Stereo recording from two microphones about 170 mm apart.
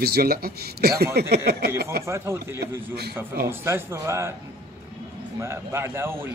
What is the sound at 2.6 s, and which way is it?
Speech, 70° right (ahead or behind).